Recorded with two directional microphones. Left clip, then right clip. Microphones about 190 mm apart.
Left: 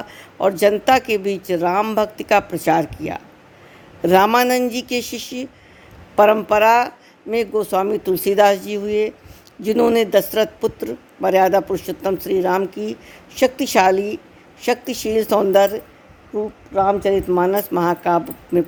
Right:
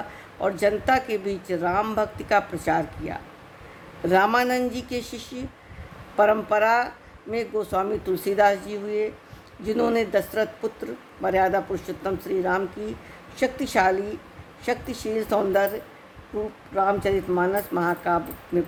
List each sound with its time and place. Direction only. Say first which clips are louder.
0.3 s a man's voice: left 7 dB; 40° left (ahead or behind)